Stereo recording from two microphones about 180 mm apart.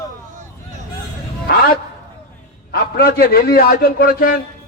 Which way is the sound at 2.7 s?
55° left (ahead or behind).